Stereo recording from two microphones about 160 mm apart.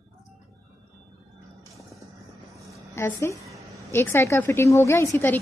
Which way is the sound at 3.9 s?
15° left (ahead or behind).